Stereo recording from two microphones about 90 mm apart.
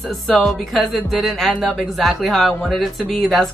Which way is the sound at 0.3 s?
5° left (ahead or behind).